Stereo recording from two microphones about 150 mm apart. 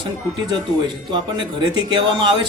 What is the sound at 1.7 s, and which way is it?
Speech, 30° right (ahead or behind).